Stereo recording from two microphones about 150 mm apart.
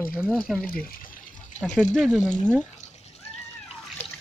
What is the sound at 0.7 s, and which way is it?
Speech, 75° left (ahead or behind).